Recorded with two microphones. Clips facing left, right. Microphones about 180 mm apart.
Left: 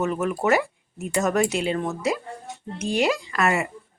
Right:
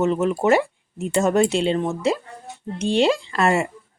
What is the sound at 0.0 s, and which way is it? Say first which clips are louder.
Speech: right 4 dB; 25° right (ahead or behind).